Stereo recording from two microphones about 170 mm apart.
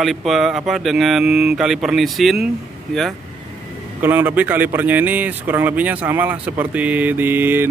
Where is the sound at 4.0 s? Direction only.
10° right (ahead or behind).